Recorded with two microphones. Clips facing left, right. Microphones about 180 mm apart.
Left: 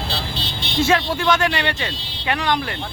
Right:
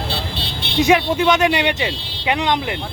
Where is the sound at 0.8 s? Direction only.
15° right (ahead or behind).